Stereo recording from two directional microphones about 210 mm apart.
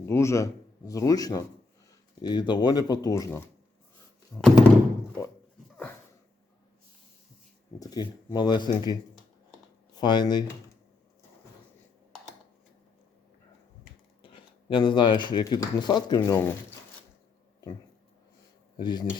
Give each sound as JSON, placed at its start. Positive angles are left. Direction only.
{"t": 0.0, "sound": "a man's voice", "side_deg": 15}
{"t": 4.3, "sound": "thunk", "side_deg": 0}
{"t": 5.7, "sound": "dog", "side_deg": 10}
{"t": 7.8, "sound": "speech", "side_deg": 20}
{"t": 10.0, "sound": "speech", "side_deg": 20}
{"t": 14.2, "sound": "speech", "side_deg": 25}
{"t": 18.8, "sound": "speech", "side_deg": 20}